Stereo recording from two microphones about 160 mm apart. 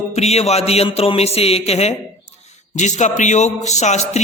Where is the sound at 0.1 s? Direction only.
40° left (ahead or behind).